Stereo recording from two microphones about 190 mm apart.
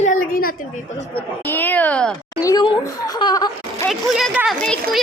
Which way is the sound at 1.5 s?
10° left (ahead or behind).